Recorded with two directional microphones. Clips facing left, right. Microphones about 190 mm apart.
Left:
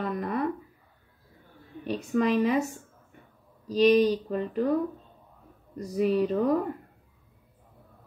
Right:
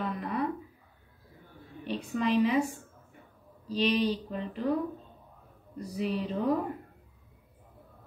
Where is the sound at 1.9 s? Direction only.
45° left (ahead or behind).